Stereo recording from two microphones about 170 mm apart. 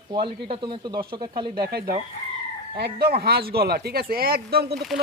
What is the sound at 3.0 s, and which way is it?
Speech, 70° right (ahead or behind).